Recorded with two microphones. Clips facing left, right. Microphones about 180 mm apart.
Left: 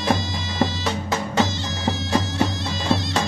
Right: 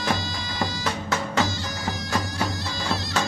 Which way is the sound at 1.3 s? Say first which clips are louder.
Left 3 dB; 25° left (ahead or behind).